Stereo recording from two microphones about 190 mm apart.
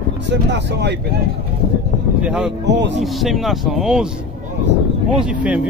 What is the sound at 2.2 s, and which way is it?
Speech, 5° right (ahead or behind).